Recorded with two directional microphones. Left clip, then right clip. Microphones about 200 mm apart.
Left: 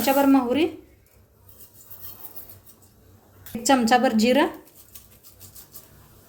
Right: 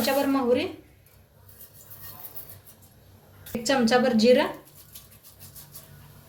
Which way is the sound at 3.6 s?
55° left (ahead or behind).